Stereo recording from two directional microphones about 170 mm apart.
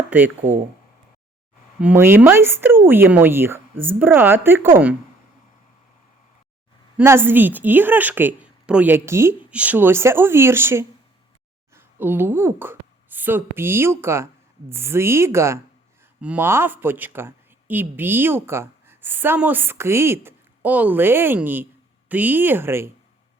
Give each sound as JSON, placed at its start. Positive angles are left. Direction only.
{"t": 0.1, "sound": "speech", "side_deg": -10}
{"t": 1.8, "sound": "speech", "side_deg": -10}
{"t": 6.9, "sound": "a woman's voice", "side_deg": -15}